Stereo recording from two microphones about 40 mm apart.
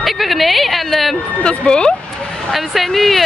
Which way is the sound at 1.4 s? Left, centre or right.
Left.